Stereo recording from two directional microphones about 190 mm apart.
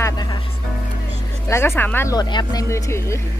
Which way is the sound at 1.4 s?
15° left (ahead or behind).